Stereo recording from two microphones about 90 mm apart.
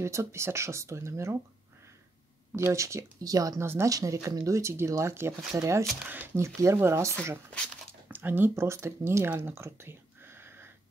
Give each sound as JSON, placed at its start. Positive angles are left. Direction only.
{"t": 0.0, "sound": "speech", "side_deg": -30}
{"t": 2.5, "sound": "speech", "side_deg": -35}
{"t": 3.6, "sound": "speech", "side_deg": -25}
{"t": 3.9, "sound": "speech", "side_deg": -35}
{"t": 6.0, "sound": "speech", "side_deg": -20}